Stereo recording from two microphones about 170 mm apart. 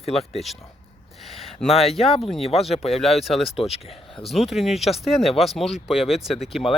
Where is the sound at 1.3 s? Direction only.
Centre (ahead or behind).